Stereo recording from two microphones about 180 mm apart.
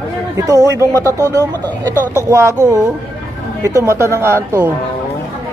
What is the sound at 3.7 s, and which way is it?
Speech, 15° right (ahead or behind).